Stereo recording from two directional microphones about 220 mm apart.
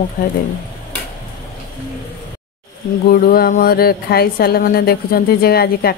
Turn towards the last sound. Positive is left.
turn(degrees=45)  # may be behind; listen again after turning